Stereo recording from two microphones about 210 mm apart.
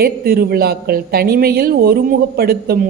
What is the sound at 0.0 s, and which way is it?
A woman's voice, 45° right (ahead or behind).